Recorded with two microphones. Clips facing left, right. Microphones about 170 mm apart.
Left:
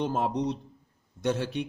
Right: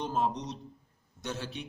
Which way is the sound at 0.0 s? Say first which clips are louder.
Left 4 dB; 55° left (ahead or behind).